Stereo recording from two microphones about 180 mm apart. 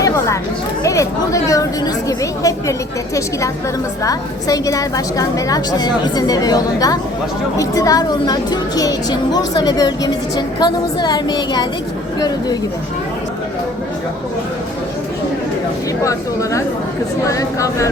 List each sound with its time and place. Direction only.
0.9 s speech: 20° left (ahead or behind)
4.0 s speech: 20° left (ahead or behind)
16.0 s speech: 15° left (ahead or behind)